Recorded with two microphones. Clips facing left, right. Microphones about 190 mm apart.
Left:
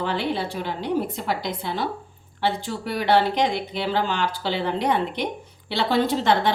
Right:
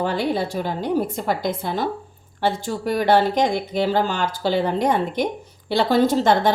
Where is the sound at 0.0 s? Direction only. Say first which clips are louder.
Right 3 dB; 45° right (ahead or behind).